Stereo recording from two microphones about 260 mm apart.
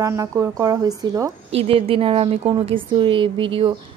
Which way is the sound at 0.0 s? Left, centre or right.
Centre.